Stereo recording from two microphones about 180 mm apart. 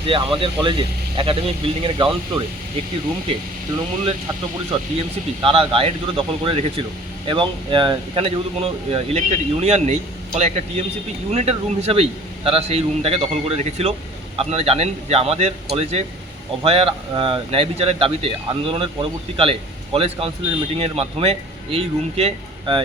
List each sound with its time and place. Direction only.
0.1 s speech: 30° right (ahead or behind)
4.7 s speech: 30° right (ahead or behind)